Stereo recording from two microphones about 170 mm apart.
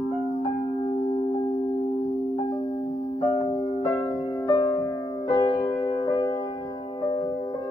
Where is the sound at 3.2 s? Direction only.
30° left (ahead or behind).